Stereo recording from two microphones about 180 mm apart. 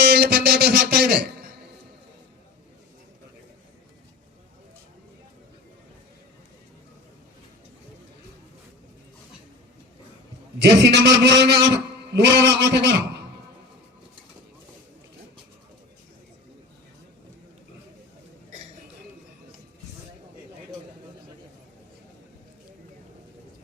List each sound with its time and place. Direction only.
0.0 s music: 60° right (ahead or behind)
10.6 s a man's voice: 70° right (ahead or behind)